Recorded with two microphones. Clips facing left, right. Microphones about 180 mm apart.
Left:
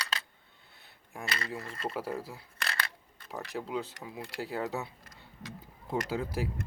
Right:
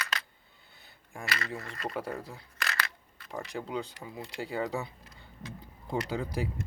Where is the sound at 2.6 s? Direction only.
30° left (ahead or behind).